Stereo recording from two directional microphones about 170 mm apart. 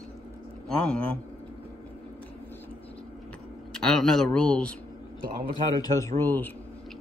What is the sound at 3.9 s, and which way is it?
Speech, 5° left (ahead or behind).